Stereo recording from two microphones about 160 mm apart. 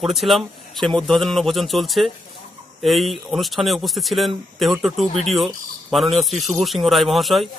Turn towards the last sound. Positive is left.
turn(degrees=0)  # may be behind; listen again after turning